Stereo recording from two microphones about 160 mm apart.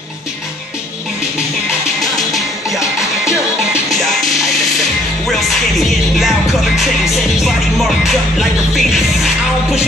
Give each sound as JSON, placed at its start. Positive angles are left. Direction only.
{"t": 2.0, "sound": "music", "side_deg": 0}